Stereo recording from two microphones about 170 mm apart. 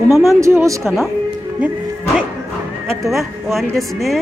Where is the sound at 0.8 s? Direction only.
Centre (ahead or behind).